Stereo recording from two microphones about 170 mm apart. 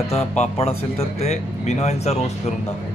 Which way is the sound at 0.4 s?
40° left (ahead or behind).